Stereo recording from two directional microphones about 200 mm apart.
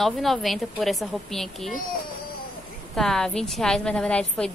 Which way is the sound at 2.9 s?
Centre (ahead or behind).